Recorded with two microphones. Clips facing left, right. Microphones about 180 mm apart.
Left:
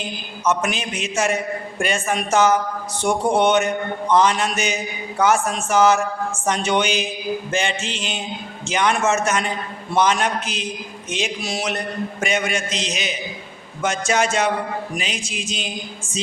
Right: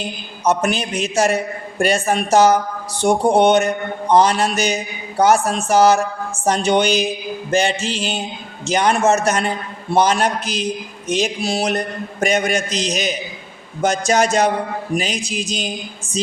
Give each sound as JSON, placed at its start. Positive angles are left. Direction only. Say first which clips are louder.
{"t": 0.4, "sound": "a man's voice", "louder": "right 4 dB", "side_deg": -35}